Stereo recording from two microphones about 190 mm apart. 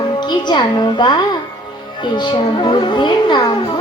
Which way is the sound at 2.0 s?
25° left (ahead or behind).